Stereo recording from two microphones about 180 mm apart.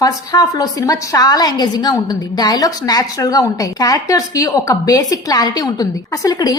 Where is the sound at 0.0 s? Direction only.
20° left (ahead or behind).